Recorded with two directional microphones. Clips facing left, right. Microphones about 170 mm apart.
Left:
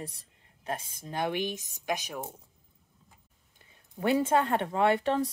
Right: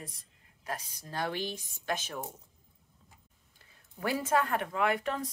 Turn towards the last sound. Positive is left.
turn(degrees=30)  # may be behind; listen again after turning